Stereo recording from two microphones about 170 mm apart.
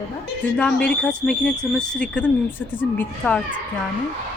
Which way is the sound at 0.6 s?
5° left (ahead or behind).